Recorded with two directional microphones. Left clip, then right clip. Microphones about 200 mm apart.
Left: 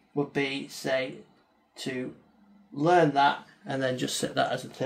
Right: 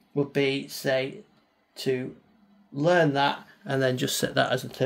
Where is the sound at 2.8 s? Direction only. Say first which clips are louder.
Even; 35° right (ahead or behind).